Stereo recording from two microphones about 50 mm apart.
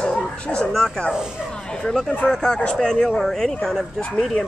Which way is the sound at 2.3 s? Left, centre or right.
Centre.